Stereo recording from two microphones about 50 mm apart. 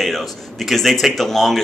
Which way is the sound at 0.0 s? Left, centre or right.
Centre.